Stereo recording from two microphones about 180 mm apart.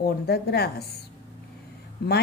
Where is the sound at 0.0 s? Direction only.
60° left (ahead or behind).